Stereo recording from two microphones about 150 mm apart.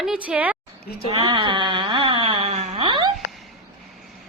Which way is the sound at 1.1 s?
30° right (ahead or behind).